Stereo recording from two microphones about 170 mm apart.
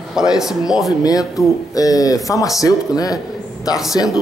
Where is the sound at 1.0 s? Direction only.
20° left (ahead or behind).